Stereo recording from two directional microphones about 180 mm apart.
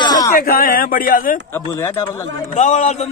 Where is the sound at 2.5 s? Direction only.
40° left (ahead or behind).